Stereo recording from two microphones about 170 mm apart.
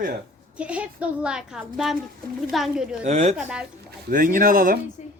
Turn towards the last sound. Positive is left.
turn(degrees=45)  # may be behind; listen again after turning